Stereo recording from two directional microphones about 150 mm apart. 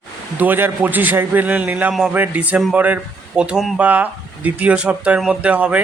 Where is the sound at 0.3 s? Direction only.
10° right (ahead or behind).